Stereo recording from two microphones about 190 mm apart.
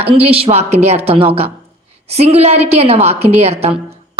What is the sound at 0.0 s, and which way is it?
A woman's voice, 30° right (ahead or behind).